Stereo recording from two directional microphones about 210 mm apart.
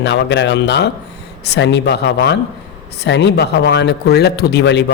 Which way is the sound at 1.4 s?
55° left (ahead or behind).